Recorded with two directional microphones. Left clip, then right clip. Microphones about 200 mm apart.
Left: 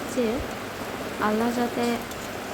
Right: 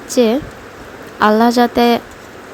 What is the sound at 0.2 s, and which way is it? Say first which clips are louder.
Speech: right 14 dB; 55° right (ahead or behind).